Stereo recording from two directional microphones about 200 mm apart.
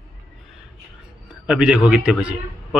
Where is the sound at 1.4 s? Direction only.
5° right (ahead or behind).